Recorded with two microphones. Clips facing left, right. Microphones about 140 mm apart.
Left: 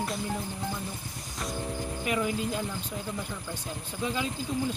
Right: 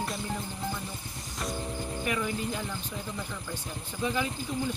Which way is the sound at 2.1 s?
15° left (ahead or behind).